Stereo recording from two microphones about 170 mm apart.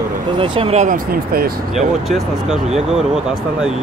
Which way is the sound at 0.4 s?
35° right (ahead or behind).